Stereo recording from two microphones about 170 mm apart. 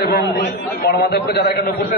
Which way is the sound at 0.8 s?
70° left (ahead or behind).